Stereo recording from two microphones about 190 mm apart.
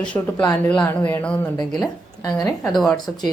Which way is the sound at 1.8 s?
20° left (ahead or behind).